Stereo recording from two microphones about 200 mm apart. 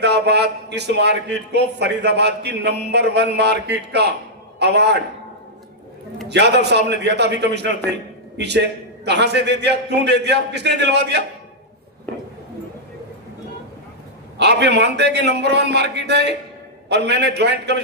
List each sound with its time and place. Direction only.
0.0 s a man's voice: 55° right (ahead or behind)
6.2 s a man's voice: 55° right (ahead or behind)
14.3 s a man's voice: 55° right (ahead or behind)